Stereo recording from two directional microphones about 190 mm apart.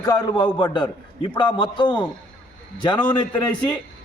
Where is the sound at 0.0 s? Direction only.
20° left (ahead or behind).